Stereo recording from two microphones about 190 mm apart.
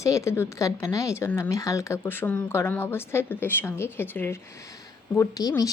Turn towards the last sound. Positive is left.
turn(degrees=20)  # may be behind; listen again after turning